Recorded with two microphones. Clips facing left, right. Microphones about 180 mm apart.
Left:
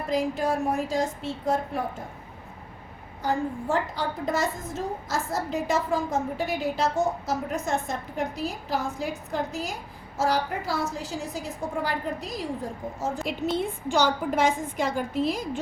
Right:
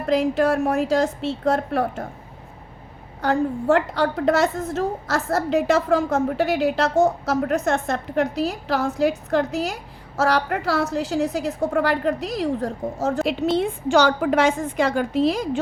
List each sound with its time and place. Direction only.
0.1 s a woman's voice: 75° right (ahead or behind)
3.2 s a woman's voice: 70° right (ahead or behind)